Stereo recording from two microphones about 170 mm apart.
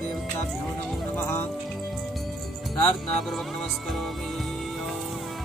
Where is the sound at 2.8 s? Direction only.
5° left (ahead or behind).